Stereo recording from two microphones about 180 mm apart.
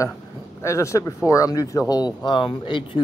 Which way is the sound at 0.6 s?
15° left (ahead or behind).